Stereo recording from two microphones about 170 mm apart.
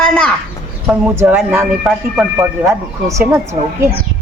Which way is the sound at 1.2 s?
10° right (ahead or behind).